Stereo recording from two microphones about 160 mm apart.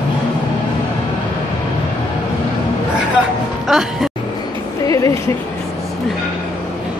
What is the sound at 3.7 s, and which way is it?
Music, 5° right (ahead or behind).